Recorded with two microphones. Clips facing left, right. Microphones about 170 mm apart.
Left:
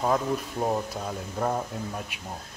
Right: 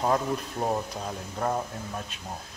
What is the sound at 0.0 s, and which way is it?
Speech, centre (ahead or behind).